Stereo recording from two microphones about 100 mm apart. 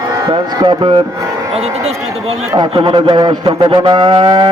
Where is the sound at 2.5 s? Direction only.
60° right (ahead or behind).